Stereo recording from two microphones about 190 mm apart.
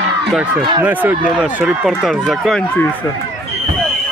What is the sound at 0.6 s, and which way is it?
Speech, 25° right (ahead or behind).